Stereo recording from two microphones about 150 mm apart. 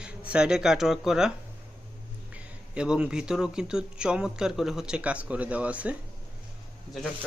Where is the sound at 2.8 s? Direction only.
5° right (ahead or behind).